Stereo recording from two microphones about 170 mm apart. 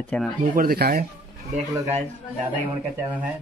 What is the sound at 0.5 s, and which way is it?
Speech, 60° right (ahead or behind).